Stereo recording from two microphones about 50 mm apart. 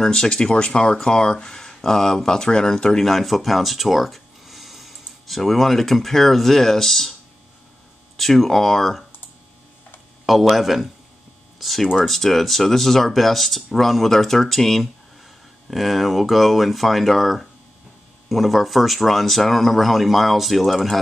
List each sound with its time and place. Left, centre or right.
0.0 s speech: centre
8.2 s speech: centre
10.5 s speech: centre